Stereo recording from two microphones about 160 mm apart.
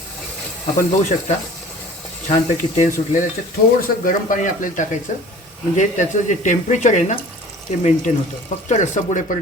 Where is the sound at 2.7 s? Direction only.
50° left (ahead or behind).